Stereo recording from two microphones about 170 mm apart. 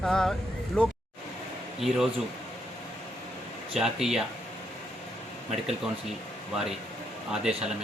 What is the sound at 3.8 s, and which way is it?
Speech, centre (ahead or behind).